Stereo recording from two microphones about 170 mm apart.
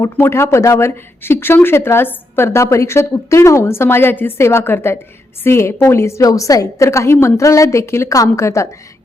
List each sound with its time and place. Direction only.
0.0 s speech: 15° left (ahead or behind)